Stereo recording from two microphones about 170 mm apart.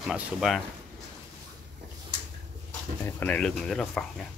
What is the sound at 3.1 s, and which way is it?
Speech, 10° left (ahead or behind).